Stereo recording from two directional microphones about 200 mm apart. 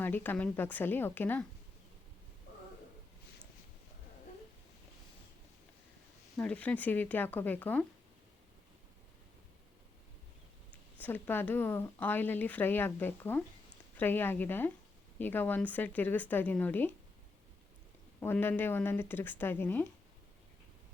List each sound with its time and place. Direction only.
0.0 s speech: 10° left (ahead or behind)
6.3 s speech: 5° left (ahead or behind)
11.0 s speech: 10° left (ahead or behind)
18.2 s speech: 10° left (ahead or behind)